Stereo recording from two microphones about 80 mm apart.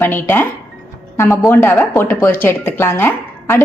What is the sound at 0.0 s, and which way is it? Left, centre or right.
A woman's voice, left.